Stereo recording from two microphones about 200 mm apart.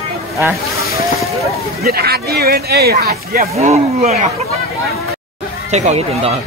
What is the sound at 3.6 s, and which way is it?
Speech, 35° right (ahead or behind).